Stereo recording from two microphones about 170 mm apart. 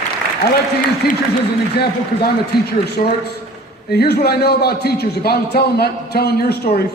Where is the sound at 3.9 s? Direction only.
70° left (ahead or behind).